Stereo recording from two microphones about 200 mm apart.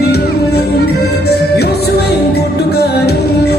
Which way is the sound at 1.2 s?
55° left (ahead or behind).